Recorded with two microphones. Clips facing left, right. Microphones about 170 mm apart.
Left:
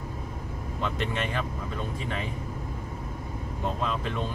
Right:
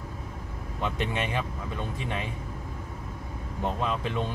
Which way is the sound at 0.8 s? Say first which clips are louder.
Right 1 dB; 15° right (ahead or behind).